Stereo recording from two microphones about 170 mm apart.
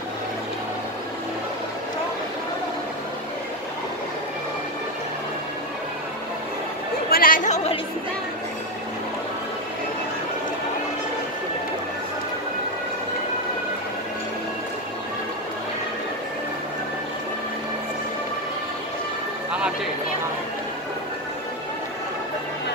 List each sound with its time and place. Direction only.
7.1 s chatter: 55° left (ahead or behind); by 7.8 s 40° left (ahead or behind)